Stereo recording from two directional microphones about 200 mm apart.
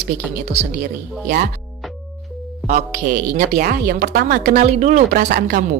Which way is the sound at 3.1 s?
45° right (ahead or behind).